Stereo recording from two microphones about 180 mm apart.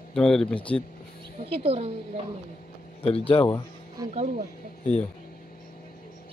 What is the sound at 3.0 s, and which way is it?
Speech, 30° left (ahead or behind).